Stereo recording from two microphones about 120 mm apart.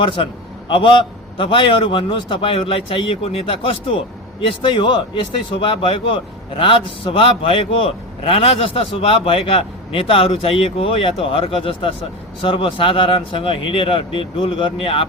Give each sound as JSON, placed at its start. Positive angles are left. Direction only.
{"t": 0.0, "sound": "a man's voice", "side_deg": 45}